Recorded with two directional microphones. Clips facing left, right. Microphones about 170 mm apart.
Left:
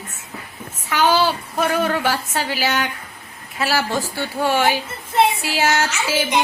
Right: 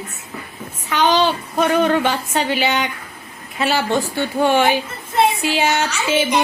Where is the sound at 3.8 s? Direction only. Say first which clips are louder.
Right 3 dB; 20° right (ahead or behind).